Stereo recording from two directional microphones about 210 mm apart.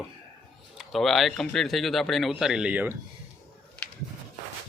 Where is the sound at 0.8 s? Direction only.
Centre (ahead or behind).